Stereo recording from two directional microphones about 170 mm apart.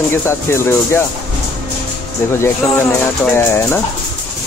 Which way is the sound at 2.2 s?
15° left (ahead or behind).